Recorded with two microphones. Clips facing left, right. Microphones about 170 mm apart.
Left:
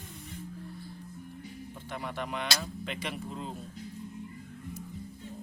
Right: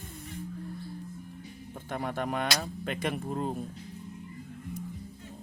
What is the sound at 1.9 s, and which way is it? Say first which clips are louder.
Speech: right 5 dB; 45° right (ahead or behind).